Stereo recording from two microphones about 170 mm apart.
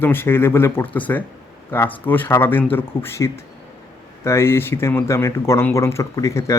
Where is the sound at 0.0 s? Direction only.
15° left (ahead or behind).